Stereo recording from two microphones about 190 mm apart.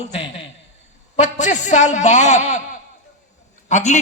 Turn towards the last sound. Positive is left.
turn(degrees=40)  # may be behind; listen again after turning